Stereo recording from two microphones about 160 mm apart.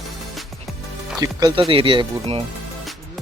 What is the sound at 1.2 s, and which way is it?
Speech, 25° right (ahead or behind).